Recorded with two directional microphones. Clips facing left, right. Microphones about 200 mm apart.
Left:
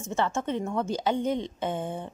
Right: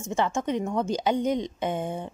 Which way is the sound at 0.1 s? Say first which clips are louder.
Right 2 dB; 15° right (ahead or behind).